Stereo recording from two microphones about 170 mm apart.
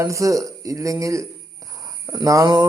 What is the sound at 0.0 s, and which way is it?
A man's voice, 20° right (ahead or behind).